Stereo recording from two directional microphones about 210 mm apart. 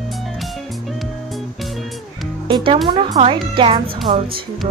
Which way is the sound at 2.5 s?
25° right (ahead or behind).